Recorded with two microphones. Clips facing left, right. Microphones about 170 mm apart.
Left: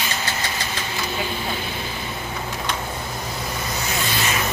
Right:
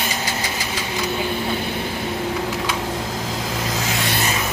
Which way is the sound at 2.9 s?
90° right.